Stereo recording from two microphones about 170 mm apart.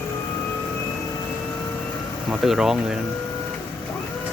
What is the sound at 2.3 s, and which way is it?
Speech, centre (ahead or behind).